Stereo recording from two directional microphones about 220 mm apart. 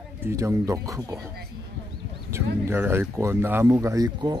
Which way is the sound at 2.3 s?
10° right (ahead or behind).